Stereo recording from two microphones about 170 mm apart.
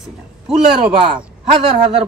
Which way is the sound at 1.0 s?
30° right (ahead or behind).